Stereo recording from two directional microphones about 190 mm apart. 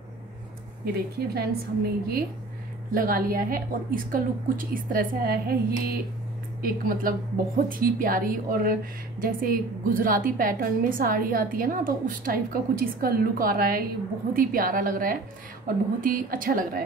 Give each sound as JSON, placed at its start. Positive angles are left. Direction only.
{"t": 1.1, "sound": "a woman's voice", "side_deg": -55}
{"t": 2.9, "sound": "a woman's voice", "side_deg": -50}